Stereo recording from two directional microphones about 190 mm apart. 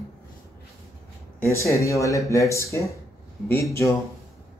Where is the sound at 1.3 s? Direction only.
15° left (ahead or behind).